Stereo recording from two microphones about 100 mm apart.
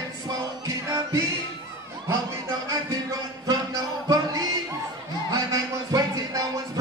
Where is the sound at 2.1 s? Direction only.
35° right (ahead or behind).